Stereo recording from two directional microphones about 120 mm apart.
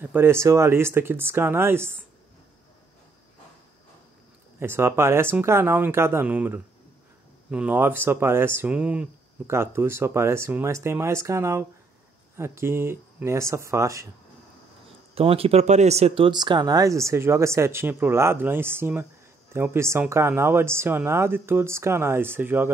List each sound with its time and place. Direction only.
0.0 s speech: 20° right (ahead or behind)
4.6 s speech: 20° right (ahead or behind)
9.5 s speech: 20° right (ahead or behind)
15.1 s speech: 55° right (ahead or behind)
16.3 s speech: 40° right (ahead or behind); by 22.7 s 15° right (ahead or behind)